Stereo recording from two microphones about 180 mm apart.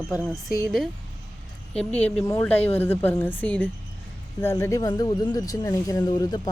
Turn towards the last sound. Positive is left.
turn(degrees=20)  # may be behind; listen again after turning